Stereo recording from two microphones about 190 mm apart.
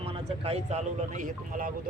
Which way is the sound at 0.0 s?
30° right (ahead or behind).